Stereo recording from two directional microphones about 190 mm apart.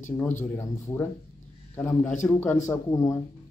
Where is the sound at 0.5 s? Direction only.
10° left (ahead or behind).